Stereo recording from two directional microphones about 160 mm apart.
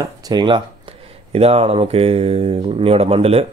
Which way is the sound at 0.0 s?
25° right (ahead or behind).